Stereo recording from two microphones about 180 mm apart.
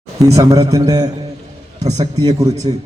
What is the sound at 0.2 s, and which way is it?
A man's voice, 20° right (ahead or behind).